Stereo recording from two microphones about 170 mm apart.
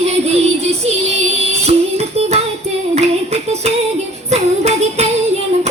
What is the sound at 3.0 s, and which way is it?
Music, 40° right (ahead or behind).